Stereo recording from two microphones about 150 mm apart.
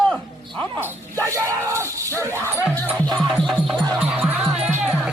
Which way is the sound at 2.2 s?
20° right (ahead or behind).